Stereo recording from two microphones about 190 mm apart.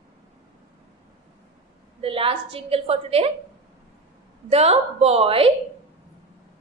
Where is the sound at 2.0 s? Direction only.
30° right (ahead or behind).